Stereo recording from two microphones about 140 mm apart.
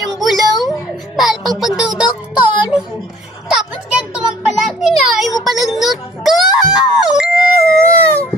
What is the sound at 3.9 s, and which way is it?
A child's voice, centre (ahead or behind).